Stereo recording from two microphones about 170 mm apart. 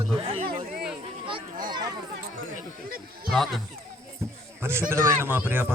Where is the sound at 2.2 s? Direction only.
60° right (ahead or behind).